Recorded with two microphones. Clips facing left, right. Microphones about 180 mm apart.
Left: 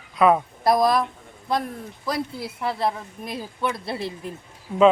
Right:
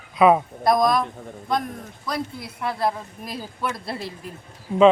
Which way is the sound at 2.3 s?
30° left (ahead or behind).